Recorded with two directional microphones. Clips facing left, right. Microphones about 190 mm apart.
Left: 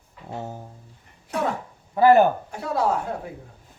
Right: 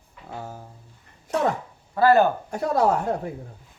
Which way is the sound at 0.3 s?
20° left (ahead or behind).